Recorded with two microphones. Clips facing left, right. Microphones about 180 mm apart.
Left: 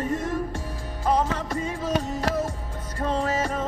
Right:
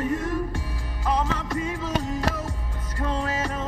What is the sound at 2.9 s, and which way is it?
Music, 25° left (ahead or behind).